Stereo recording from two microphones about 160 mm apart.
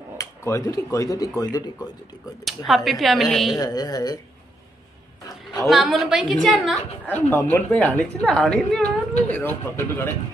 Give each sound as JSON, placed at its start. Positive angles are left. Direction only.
{"t": 0.2, "sound": "speech", "side_deg": 20}
{"t": 2.4, "sound": "a woman's voice", "side_deg": 0}
{"t": 3.5, "sound": "speech", "side_deg": 25}
{"t": 5.6, "sound": "a woman's voice", "side_deg": 0}